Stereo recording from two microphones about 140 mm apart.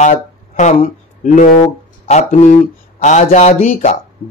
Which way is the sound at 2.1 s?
55° left (ahead or behind).